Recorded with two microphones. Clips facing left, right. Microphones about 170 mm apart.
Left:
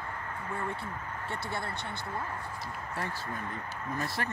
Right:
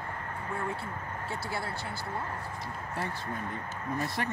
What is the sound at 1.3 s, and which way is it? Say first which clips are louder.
Speech: even; 5° right (ahead or behind).